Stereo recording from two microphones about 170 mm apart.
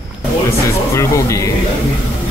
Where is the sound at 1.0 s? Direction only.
20° left (ahead or behind).